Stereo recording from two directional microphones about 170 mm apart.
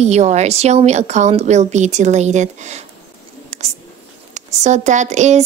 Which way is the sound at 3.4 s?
40° right (ahead or behind).